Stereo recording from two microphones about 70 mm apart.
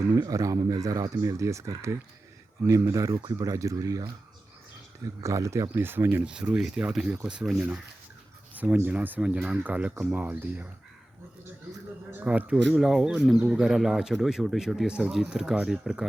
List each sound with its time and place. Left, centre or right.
0.1 s speech: right
5.2 s speech: right
5.7 s speech: right
6.2 s speech: centre
8.6 s speech: right
12.1 s speech: right
12.7 s speech: centre